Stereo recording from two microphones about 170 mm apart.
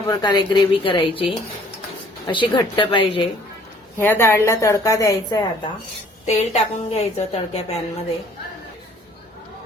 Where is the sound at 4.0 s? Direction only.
15° left (ahead or behind).